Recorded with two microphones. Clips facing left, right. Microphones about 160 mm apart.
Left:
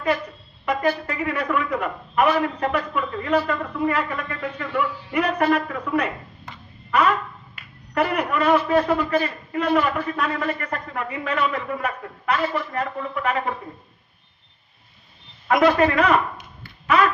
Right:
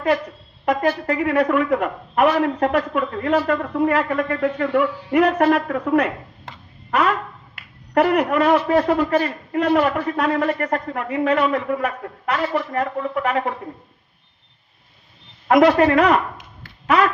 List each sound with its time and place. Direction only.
0.6 s a woman's voice: 90° right
4.8 s a man's voice: 90° right
5.6 s a woman's voice: 55° right (ahead or behind)
6.9 s a woman's voice: 90° right; by 13.5 s 75° right (ahead or behind)
15.4 s speech: 80° right